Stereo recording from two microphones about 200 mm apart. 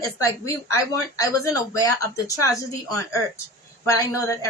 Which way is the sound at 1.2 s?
15° left (ahead or behind).